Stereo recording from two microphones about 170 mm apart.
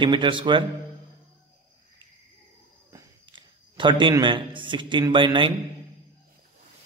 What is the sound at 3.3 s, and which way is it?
A man's voice, 25° right (ahead or behind).